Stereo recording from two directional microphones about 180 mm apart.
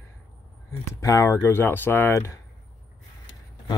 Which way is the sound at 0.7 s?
15° left (ahead or behind).